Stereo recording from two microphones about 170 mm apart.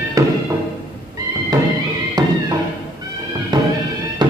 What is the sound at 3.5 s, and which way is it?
Music, 25° right (ahead or behind).